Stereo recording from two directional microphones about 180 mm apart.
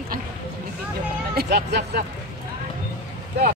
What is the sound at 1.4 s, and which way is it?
Speech, 65° right (ahead or behind).